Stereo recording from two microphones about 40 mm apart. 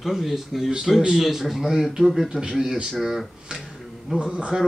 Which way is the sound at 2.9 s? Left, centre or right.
Centre.